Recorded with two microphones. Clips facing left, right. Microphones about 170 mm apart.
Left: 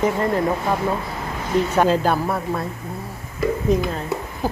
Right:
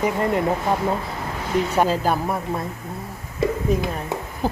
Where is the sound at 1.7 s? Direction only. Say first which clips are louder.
Left 2 dB; 10° right (ahead or behind).